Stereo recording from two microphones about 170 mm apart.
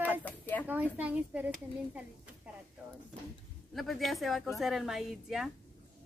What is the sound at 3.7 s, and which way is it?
A woman's voice, centre (ahead or behind).